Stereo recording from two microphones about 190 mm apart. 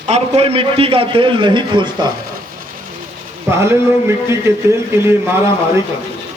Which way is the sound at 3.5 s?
15° right (ahead or behind).